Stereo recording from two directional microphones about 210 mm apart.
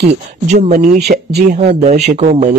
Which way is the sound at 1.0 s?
50° right (ahead or behind).